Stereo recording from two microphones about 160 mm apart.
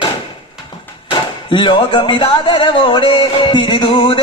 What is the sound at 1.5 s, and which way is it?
Speech, 30° left (ahead or behind).